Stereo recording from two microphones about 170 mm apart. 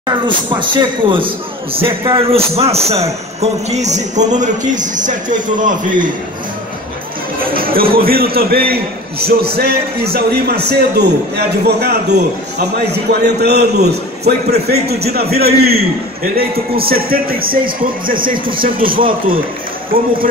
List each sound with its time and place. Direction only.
0.5 s a man's voice: 30° right (ahead or behind); by 6.1 s 50° right (ahead or behind)
7.5 s a man's voice: 60° right (ahead or behind)